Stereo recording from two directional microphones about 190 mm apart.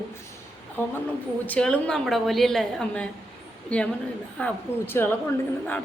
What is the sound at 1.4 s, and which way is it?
A woman's voice, 5° left (ahead or behind).